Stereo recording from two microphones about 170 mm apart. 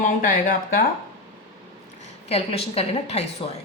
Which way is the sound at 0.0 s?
55° left (ahead or behind).